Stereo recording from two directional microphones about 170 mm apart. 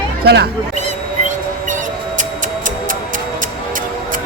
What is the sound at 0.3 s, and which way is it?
Speech, 70° right (ahead or behind).